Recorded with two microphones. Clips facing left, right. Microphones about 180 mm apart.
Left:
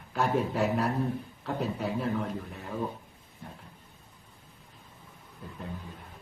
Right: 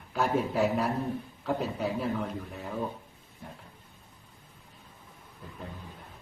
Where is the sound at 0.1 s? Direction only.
Centre (ahead or behind).